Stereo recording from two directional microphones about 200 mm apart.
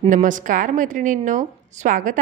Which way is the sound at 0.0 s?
40° right (ahead or behind).